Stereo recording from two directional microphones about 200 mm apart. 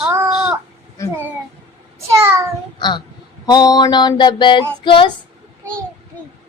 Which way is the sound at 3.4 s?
20° left (ahead or behind).